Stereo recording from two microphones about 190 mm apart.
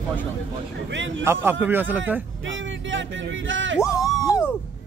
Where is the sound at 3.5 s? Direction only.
80° right.